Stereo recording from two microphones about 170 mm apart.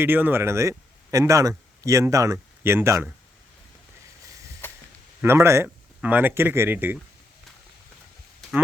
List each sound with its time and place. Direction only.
0.0 s speech: 10° right (ahead or behind)
4.6 s a sound: 10° left (ahead or behind)
5.2 s speech: 15° right (ahead or behind)